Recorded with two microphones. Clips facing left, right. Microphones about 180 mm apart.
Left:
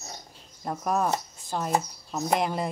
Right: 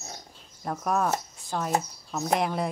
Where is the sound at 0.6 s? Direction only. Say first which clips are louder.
Even; 5° left (ahead or behind).